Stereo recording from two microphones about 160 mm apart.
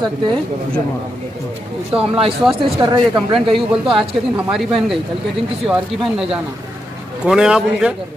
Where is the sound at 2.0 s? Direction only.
35° right (ahead or behind).